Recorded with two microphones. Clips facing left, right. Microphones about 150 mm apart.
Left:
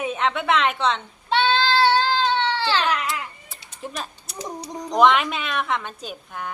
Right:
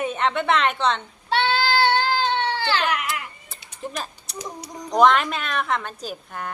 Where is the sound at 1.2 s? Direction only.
20° left (ahead or behind).